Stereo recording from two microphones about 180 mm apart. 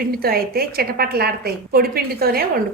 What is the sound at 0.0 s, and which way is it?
A woman's voice, 55° right (ahead or behind).